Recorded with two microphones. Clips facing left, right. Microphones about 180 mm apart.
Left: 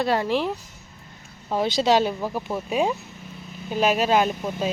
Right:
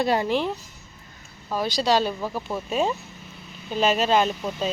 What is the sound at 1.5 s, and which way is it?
Speech, 25° left (ahead or behind).